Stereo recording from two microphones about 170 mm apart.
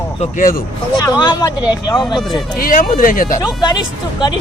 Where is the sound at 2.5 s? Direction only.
55° left (ahead or behind).